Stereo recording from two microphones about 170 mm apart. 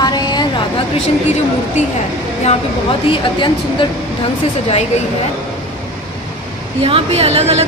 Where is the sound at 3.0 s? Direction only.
30° left (ahead or behind).